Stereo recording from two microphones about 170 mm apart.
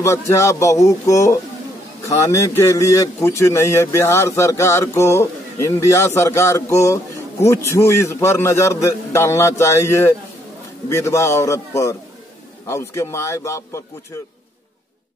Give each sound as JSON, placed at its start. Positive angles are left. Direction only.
{"t": 0.0, "sound": "speech", "side_deg": 15}